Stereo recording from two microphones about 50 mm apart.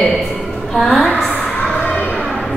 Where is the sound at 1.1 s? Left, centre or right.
Centre.